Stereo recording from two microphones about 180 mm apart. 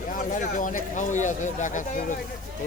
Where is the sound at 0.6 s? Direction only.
45° left (ahead or behind).